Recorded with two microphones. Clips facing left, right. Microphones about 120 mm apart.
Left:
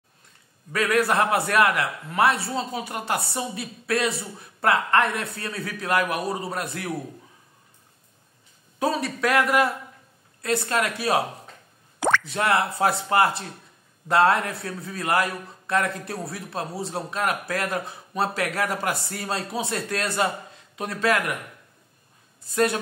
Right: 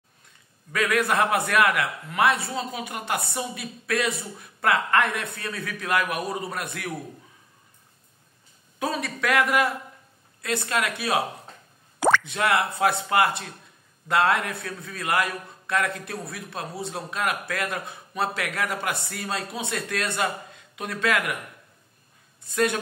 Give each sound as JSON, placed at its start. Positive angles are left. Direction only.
{"t": 0.7, "sound": "a man's voice", "side_deg": 30}
{"t": 8.7, "sound": "a man's voice", "side_deg": 35}
{"t": 22.4, "sound": "speech", "side_deg": 35}